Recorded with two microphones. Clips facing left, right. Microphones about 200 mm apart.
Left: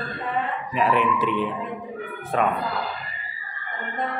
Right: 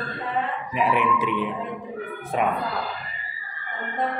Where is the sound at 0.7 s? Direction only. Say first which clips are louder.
Left 1 dB; 15° right (ahead or behind).